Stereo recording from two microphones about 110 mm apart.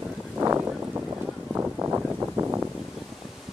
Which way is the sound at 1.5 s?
20° right (ahead or behind).